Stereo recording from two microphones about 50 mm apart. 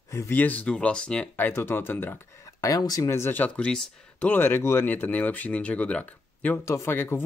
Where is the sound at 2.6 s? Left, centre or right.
Left.